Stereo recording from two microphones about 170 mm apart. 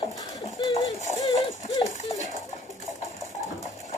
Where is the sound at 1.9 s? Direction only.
45° left (ahead or behind).